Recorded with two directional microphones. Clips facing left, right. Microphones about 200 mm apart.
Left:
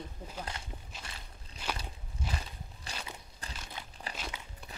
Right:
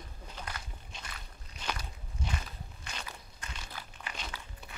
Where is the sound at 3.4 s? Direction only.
35° left (ahead or behind).